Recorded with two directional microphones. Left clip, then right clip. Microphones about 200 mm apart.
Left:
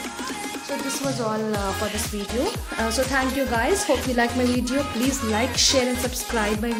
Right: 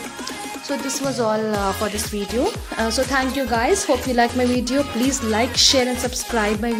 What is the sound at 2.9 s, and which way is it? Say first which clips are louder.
A woman's voice: right 2 dB; 20° right (ahead or behind).